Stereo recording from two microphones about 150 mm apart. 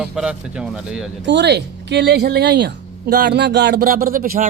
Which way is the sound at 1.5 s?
90° right.